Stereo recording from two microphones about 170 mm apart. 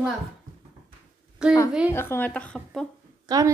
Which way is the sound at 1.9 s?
15° left (ahead or behind).